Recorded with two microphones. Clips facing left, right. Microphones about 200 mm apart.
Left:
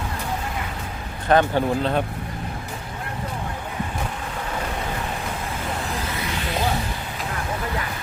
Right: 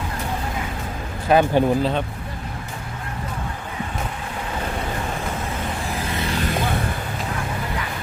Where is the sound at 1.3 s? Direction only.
10° right (ahead or behind).